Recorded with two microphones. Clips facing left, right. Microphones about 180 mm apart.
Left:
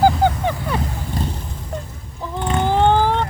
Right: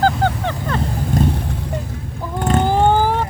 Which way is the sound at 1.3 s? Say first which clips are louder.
Right 8 dB; 65° right (ahead or behind).